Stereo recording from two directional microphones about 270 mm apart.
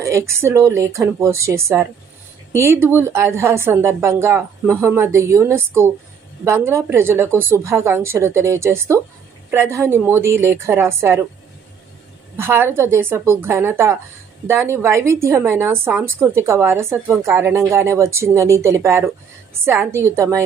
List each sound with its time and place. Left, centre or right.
0.0 s a woman's voice: centre
12.4 s a woman's voice: centre